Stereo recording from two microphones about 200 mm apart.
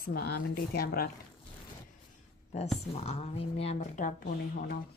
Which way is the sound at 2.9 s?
30° left (ahead or behind).